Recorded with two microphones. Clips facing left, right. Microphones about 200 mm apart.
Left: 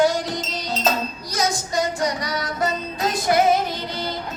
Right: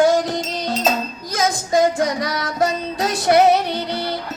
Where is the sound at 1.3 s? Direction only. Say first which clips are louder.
Right 5 dB; 50° right (ahead or behind).